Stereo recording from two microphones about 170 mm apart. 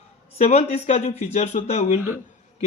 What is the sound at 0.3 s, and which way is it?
A man's voice, 40° left (ahead or behind).